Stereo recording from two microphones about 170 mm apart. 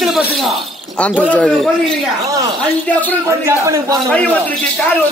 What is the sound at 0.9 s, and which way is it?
Speech, 10° left (ahead or behind).